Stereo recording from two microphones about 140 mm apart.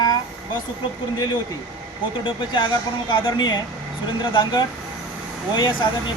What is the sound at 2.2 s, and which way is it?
Speech, 35° left (ahead or behind).